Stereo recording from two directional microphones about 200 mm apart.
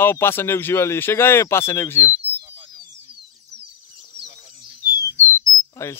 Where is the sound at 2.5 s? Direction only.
25° right (ahead or behind).